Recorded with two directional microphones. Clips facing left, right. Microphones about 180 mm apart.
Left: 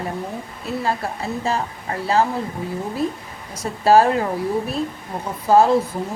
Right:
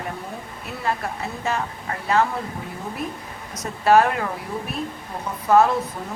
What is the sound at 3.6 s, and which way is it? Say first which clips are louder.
Speech: left 2 dB; 35° left (ahead or behind).